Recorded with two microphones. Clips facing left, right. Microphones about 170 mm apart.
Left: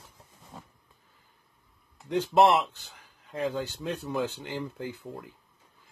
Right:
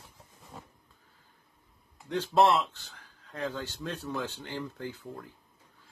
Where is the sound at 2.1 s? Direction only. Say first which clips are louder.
Left 3 dB; 15° left (ahead or behind).